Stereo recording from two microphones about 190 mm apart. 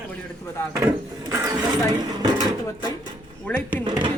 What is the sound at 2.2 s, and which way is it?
Drawer open or close, 20° right (ahead or behind).